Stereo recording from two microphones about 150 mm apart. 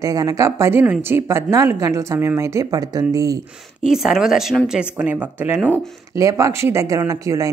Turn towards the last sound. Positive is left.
turn(degrees=-20)  # may be behind; listen again after turning